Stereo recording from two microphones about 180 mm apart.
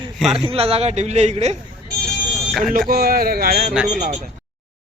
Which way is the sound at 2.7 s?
60° right (ahead or behind).